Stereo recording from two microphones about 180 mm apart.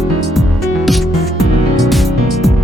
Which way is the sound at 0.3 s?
Centre (ahead or behind).